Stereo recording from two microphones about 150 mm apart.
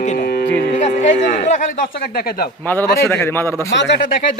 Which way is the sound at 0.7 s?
50° left (ahead or behind).